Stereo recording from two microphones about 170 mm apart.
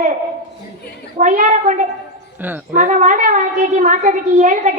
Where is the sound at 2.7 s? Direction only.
50° right (ahead or behind).